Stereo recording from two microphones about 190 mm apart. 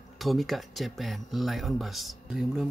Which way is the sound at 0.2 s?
Centre (ahead or behind).